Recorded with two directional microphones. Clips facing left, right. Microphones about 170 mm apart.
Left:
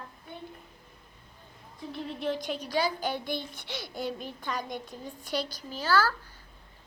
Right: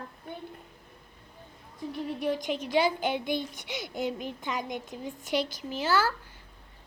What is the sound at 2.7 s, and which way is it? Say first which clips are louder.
A child's voice: right 3 dB; 25° right (ahead or behind).